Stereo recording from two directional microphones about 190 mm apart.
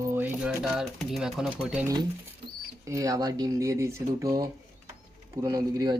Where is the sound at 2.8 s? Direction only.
15° right (ahead or behind).